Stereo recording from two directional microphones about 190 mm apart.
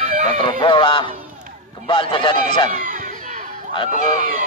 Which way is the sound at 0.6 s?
25° left (ahead or behind).